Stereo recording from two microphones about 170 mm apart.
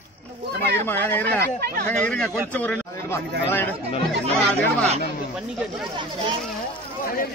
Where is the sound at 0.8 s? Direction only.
10° left (ahead or behind).